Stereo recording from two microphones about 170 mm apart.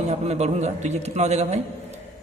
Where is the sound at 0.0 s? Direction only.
40° right (ahead or behind).